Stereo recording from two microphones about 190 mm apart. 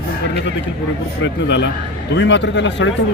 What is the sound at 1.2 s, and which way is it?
Speech, 70° left (ahead or behind).